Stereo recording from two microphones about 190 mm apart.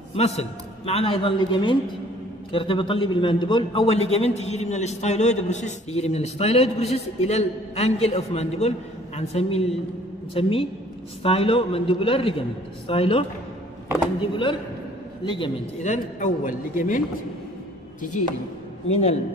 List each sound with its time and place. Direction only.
0.1 s a man's voice: 35° left (ahead or behind)
14.3 s a man's voice: 25° left (ahead or behind)
15.8 s a man's voice: 40° left (ahead or behind)
18.2 s a man's voice: 40° left (ahead or behind)